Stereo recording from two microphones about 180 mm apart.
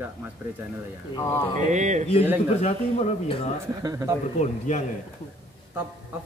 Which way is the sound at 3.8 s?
20° right (ahead or behind).